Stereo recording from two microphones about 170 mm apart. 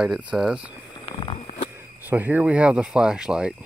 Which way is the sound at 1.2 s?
30° left (ahead or behind).